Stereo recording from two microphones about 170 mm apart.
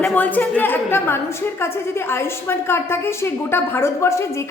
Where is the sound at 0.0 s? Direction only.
10° left (ahead or behind).